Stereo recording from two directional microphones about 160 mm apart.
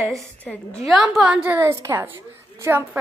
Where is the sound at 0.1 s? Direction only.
10° left (ahead or behind).